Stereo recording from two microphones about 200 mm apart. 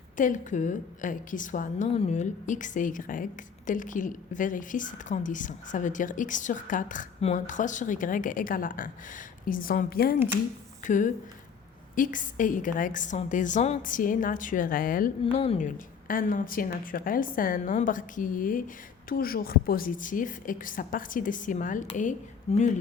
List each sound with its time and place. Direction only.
0.2 s a woman's voice: 40° left (ahead or behind)
15.2 s a woman's voice: 30° left (ahead or behind)